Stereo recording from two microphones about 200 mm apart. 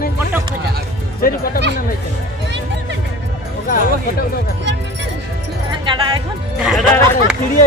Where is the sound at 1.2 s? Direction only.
50° left (ahead or behind).